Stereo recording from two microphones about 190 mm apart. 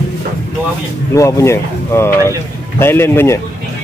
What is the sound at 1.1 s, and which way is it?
Speech, 15° left (ahead or behind).